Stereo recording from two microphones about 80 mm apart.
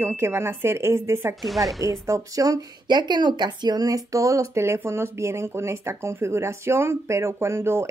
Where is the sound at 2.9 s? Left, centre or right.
Right.